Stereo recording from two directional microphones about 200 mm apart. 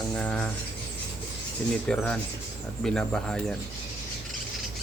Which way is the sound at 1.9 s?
5° left (ahead or behind).